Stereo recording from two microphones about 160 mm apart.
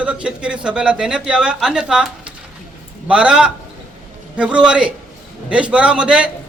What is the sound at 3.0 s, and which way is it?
A man's voice, 5° right (ahead or behind).